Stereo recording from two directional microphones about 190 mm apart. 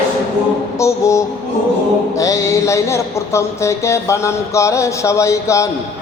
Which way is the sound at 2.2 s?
15° left (ahead or behind).